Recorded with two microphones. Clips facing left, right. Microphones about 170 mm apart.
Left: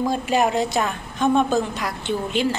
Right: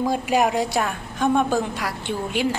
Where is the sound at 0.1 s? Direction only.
15° right (ahead or behind).